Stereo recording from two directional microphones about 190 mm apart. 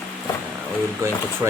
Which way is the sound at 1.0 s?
15° right (ahead or behind).